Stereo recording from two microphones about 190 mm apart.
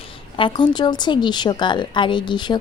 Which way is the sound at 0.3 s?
25° left (ahead or behind).